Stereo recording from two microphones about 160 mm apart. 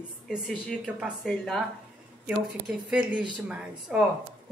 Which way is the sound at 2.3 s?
10° right (ahead or behind).